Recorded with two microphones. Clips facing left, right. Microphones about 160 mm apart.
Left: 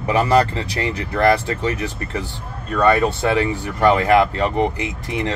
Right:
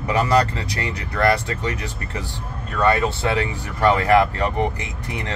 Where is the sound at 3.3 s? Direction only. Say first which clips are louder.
Left 4 dB; 25° left (ahead or behind).